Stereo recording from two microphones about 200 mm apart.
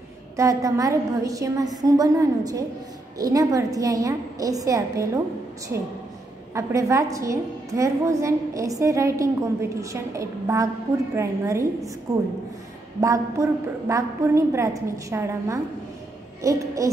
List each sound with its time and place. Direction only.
0.4 s a woman's voice: 15° right (ahead or behind)
6.5 s a woman's voice: 15° right (ahead or behind)
13.0 s a woman's voice: 15° right (ahead or behind)